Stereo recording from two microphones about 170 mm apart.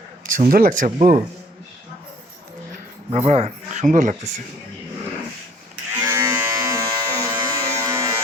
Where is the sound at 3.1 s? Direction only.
40° right (ahead or behind).